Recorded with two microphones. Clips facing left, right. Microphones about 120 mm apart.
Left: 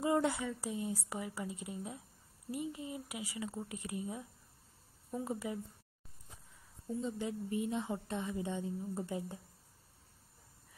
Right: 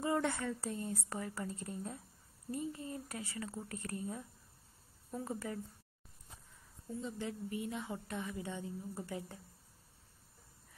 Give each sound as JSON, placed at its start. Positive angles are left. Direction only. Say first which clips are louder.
{"t": 0.0, "sound": "a woman's voice", "louder": "left 2 dB", "side_deg": 15}
{"t": 6.9, "sound": "a woman's voice", "louder": "left 3 dB", "side_deg": 20}